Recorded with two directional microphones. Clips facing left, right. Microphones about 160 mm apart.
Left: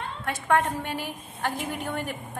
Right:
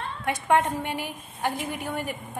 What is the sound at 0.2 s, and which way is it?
A woman's voice, 15° right (ahead or behind).